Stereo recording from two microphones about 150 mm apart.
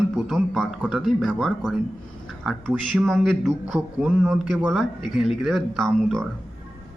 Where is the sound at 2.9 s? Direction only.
5° left (ahead or behind).